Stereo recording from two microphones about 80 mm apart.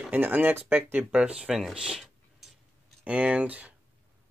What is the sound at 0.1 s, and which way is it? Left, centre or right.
Speech, right.